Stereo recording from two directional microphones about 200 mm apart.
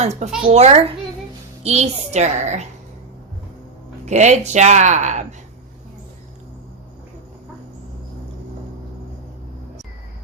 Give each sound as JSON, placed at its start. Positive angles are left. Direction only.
{"t": 0.0, "sound": "speech", "side_deg": -35}
{"t": 4.0, "sound": "speech", "side_deg": -35}